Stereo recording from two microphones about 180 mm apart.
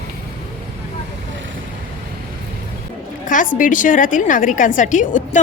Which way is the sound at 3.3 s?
45° left (ahead or behind).